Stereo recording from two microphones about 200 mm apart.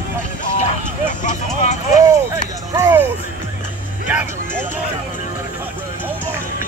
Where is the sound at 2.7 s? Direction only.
15° right (ahead or behind).